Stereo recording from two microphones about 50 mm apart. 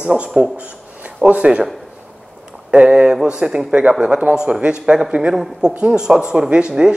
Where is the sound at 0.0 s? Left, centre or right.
Right.